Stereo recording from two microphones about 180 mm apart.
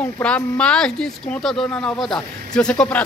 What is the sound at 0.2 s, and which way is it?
Speech, 5° left (ahead or behind).